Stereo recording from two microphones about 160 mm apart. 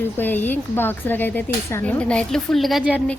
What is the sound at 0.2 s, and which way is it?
Speech, 10° left (ahead or behind).